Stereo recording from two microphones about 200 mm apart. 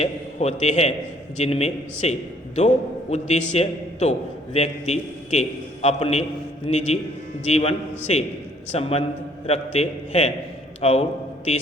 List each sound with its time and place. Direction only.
0.0 s a man's voice: 35° left (ahead or behind)